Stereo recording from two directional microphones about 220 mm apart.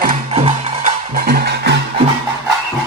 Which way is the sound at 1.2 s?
45° right (ahead or behind).